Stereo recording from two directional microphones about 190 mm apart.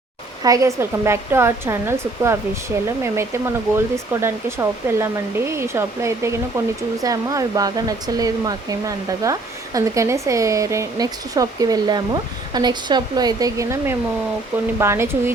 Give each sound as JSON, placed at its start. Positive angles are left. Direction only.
{"t": 0.4, "sound": "speech", "side_deg": -15}